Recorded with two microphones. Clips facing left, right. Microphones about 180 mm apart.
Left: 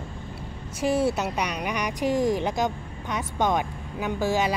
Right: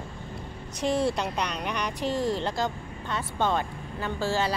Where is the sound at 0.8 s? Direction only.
5° left (ahead or behind).